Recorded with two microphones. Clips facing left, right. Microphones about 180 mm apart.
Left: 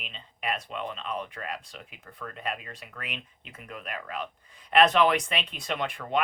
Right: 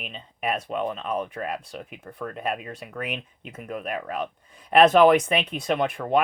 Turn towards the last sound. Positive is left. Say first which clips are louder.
# right 7 dB
turn(degrees=-50)  # may be behind; listen again after turning